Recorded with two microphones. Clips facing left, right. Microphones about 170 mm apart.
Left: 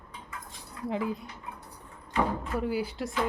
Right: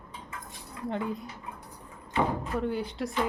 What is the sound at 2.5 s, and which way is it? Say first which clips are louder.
Speech: even; 5° left (ahead or behind).